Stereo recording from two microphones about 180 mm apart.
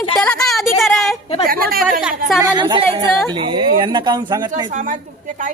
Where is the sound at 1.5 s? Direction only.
55° right (ahead or behind).